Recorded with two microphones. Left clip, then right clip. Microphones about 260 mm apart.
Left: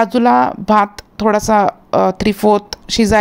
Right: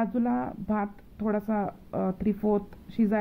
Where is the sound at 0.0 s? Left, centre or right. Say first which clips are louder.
Left 18 dB; left.